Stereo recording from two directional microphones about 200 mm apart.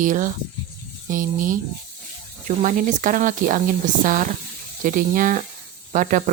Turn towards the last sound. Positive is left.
turn(degrees=-40)  # may be behind; listen again after turning